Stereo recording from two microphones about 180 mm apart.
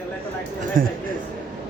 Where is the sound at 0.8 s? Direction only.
50° right (ahead or behind).